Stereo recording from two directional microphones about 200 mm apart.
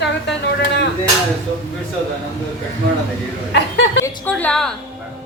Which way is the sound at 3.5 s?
60° left (ahead or behind).